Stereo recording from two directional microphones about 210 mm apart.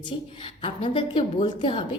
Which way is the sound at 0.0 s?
25° left (ahead or behind).